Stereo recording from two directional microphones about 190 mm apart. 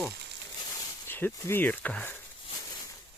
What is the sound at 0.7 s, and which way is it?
Speech, 10° left (ahead or behind).